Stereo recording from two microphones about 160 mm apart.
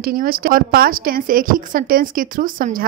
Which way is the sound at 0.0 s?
65° right (ahead or behind).